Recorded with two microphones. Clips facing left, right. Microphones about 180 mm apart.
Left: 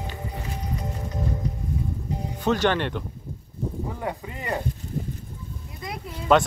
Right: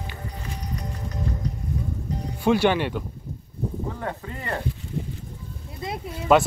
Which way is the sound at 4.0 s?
15° left (ahead or behind).